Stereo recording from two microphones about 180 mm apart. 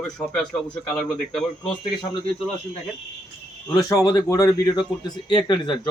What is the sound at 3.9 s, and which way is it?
Speech, 20° left (ahead or behind).